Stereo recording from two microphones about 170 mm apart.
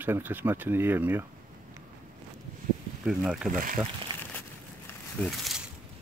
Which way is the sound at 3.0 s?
5° right (ahead or behind).